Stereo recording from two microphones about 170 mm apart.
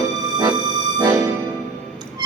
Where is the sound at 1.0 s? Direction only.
20° right (ahead or behind).